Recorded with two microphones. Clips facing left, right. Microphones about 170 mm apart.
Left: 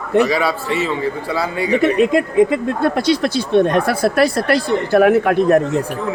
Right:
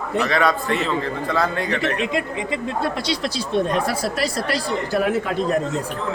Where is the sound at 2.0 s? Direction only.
50° left (ahead or behind).